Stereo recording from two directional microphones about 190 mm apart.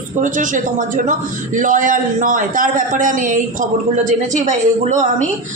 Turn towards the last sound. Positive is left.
turn(degrees=-40)  # may be behind; listen again after turning